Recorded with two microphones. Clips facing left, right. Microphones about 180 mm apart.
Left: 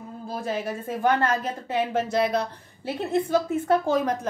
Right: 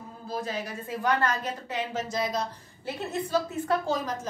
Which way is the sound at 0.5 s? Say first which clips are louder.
Left 5 dB; 50° left (ahead or behind).